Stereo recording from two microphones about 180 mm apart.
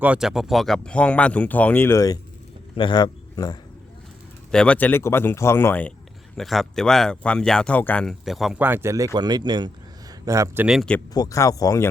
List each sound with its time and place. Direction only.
0.0 s speech: 5° right (ahead or behind); by 3.6 s 20° left (ahead or behind)
4.5 s a man's voice: 5° left (ahead or behind)
11.1 s speech: 20° left (ahead or behind)